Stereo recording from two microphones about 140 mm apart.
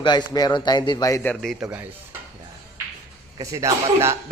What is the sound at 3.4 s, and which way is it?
Speech, 25° right (ahead or behind).